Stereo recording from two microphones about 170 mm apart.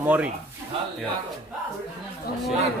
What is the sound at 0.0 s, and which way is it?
Speech, 10° right (ahead or behind).